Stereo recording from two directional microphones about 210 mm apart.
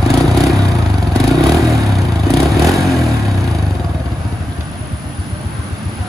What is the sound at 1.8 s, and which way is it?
Vehicle, centre (ahead or behind).